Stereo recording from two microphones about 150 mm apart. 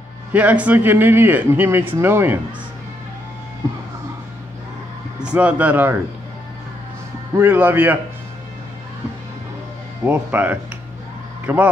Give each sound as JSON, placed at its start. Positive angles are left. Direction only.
{"t": 0.3, "sound": "a man's voice", "side_deg": -10}
{"t": 5.2, "sound": "a man's voice", "side_deg": -10}
{"t": 7.3, "sound": "a man's voice", "side_deg": -15}
{"t": 10.0, "sound": "a man's voice", "side_deg": -15}